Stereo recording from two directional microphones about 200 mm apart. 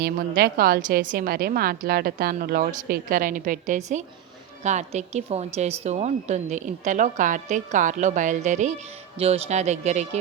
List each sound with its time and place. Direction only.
0.0 s a woman's voice: 50° right (ahead or behind); by 10.2 s 35° right (ahead or behind)